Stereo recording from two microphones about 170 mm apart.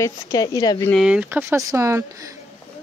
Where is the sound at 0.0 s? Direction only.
20° left (ahead or behind).